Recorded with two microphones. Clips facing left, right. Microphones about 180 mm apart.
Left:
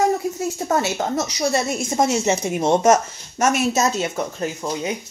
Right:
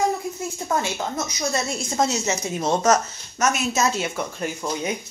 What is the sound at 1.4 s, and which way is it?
Speech, 25° left (ahead or behind).